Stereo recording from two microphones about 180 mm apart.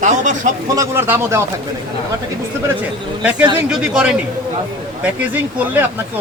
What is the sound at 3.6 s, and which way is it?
Speech, 5° right (ahead or behind).